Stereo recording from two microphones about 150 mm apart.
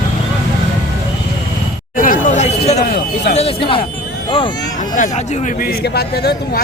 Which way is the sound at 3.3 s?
40° left (ahead or behind).